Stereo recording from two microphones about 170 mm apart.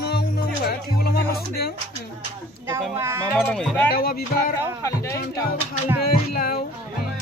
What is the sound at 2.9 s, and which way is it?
Speech, 15° right (ahead or behind).